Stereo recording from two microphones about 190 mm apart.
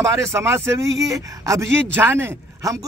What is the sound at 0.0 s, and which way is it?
A man's voice, 15° right (ahead or behind).